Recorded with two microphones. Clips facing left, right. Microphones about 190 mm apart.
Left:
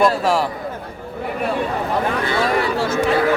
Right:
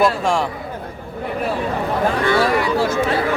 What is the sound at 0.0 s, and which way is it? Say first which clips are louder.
Speech: left 1 dB; 5° left (ahead or behind).